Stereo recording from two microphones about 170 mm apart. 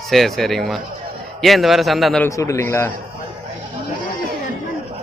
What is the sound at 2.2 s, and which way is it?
Speech, 15° left (ahead or behind).